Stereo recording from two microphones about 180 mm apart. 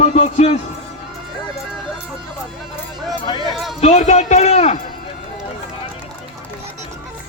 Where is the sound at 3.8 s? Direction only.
40° left (ahead or behind).